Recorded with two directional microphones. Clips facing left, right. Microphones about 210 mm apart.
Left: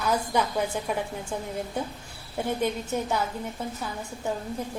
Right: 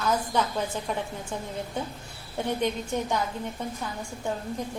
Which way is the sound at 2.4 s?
5° left (ahead or behind).